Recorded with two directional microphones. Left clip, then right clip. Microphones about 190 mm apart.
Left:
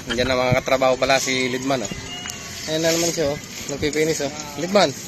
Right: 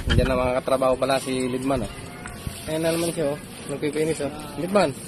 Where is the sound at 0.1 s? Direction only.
5° left (ahead or behind).